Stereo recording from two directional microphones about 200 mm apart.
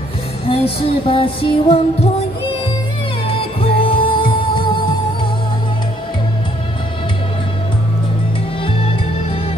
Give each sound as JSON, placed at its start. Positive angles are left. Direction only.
{"t": 0.5, "sound": "music", "side_deg": 30}
{"t": 3.3, "sound": "music", "side_deg": 25}
{"t": 8.6, "sound": "music", "side_deg": 30}